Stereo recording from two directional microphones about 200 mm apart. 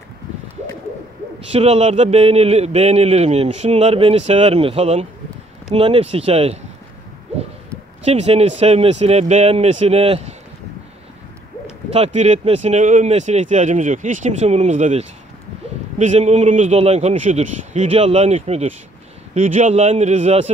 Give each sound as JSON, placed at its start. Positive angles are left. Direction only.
{"t": 1.5, "sound": "speech", "side_deg": -30}
{"t": 8.0, "sound": "speech", "side_deg": -30}
{"t": 11.9, "sound": "speech", "side_deg": -35}